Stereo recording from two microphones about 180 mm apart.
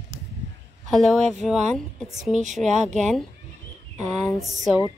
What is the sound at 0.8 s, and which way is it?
Speech, centre (ahead or behind).